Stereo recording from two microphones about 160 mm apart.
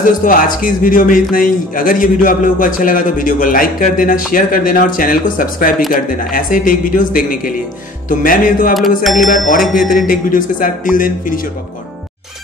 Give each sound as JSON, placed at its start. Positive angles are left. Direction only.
{"t": 0.0, "sound": "a man's voice", "side_deg": 60}
{"t": 8.7, "sound": "bicycle bell", "side_deg": 0}
{"t": 9.9, "sound": "a man's voice", "side_deg": 60}